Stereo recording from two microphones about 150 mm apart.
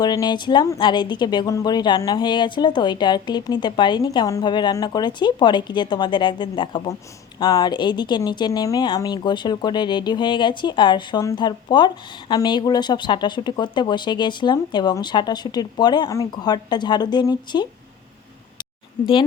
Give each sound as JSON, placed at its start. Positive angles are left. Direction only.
{"t": 0.0, "sound": "speech", "side_deg": 25}